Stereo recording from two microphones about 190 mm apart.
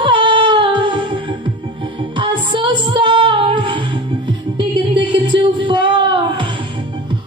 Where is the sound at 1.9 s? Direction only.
25° right (ahead or behind).